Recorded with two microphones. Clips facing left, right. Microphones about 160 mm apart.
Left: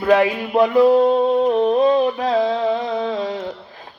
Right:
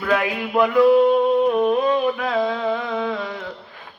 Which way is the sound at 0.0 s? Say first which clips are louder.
Left 6 dB; 30° left (ahead or behind).